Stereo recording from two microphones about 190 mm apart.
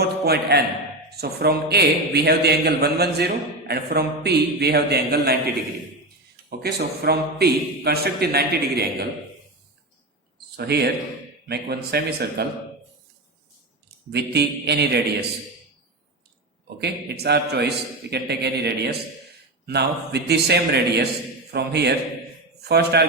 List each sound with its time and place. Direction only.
0.0 s a sound: 55° right (ahead or behind)
1.1 s a man's voice: 55° right (ahead or behind)
6.6 s a man's voice: 55° right (ahead or behind)
10.6 s a man's voice: 60° right (ahead or behind)
13.8 s a man's voice: 60° right (ahead or behind)
16.8 s a man's voice: 60° right (ahead or behind)